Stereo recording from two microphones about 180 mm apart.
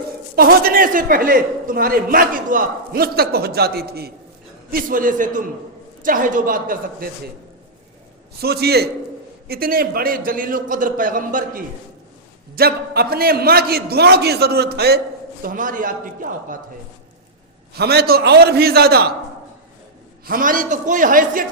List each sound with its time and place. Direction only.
0.3 s a man's voice: 55° right (ahead or behind)
4.7 s a man's voice: 50° right (ahead or behind)
8.4 s a man's voice: 60° right (ahead or behind)
12.5 s a man's voice: 60° right (ahead or behind)
15.4 s a man's voice: 45° right (ahead or behind)
17.7 s a man's voice: 60° right (ahead or behind)
20.2 s a man's voice: 50° right (ahead or behind)